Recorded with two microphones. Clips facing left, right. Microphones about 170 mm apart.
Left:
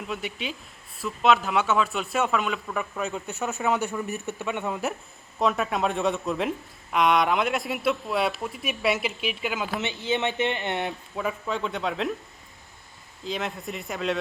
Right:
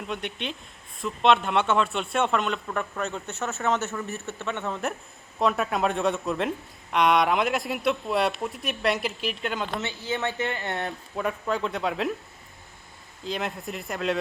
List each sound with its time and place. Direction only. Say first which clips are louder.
0.0 s speech: even; 5° left (ahead or behind)
3.2 s a man's voice: left 1 dB; 15° left (ahead or behind)
5.4 s speech: even; centre (ahead or behind)
9.8 s speech: left 3 dB; 20° left (ahead or behind)
11.1 s speech: right 4 dB; centre (ahead or behind)
13.2 s speech: even; centre (ahead or behind)